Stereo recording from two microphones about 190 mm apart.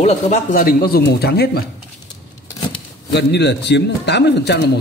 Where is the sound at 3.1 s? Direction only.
65° left (ahead or behind).